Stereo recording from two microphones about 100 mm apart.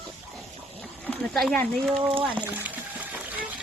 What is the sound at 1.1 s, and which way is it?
Speech, 5° left (ahead or behind).